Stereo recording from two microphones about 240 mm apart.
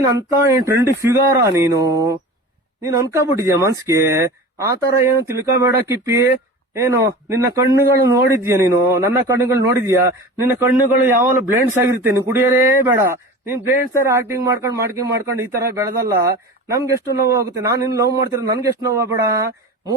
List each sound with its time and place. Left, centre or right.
0.0 s a man's voice: centre